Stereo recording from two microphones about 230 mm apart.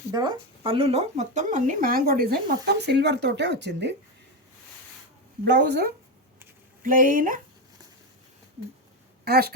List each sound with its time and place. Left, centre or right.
0.1 s speech: centre; by 3.9 s right
5.5 s speech: right
9.2 s speech: right